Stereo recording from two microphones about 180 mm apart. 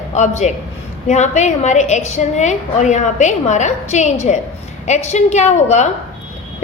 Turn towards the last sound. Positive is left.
turn(degrees=40)  # may be behind; listen again after turning